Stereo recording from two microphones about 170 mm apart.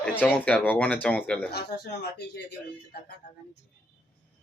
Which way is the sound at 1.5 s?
75° left (ahead or behind).